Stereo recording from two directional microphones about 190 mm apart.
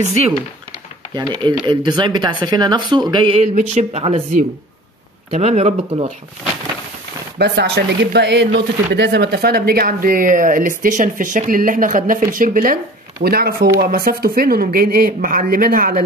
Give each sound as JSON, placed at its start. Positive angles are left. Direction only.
{"t": 1.1, "sound": "speech", "side_deg": -20}
{"t": 7.3, "sound": "speech", "side_deg": -60}